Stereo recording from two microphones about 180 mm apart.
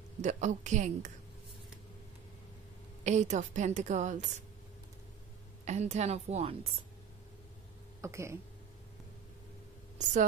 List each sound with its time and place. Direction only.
0.2 s a woman's voice: 40° right (ahead or behind)
3.0 s a woman's voice: 40° right (ahead or behind)
5.7 s a woman's voice: 40° right (ahead or behind)
8.0 s speech: 15° right (ahead or behind)